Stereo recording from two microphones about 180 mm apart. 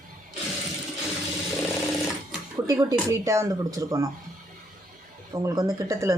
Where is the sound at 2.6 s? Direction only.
15° right (ahead or behind).